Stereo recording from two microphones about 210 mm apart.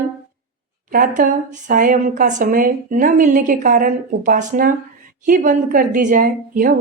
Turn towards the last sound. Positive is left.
turn(degrees=-40)  # may be behind; listen again after turning